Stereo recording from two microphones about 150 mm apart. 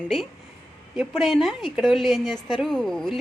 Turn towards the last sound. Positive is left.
turn(degrees=0)  # may be behind; listen again after turning